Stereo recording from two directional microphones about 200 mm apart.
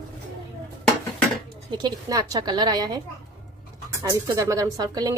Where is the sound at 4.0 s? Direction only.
15° right (ahead or behind).